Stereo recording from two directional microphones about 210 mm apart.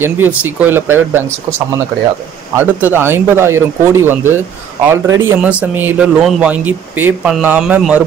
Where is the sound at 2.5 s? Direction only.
10° right (ahead or behind).